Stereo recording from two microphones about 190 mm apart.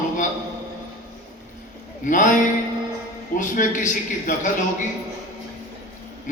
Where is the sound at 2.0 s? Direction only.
40° left (ahead or behind).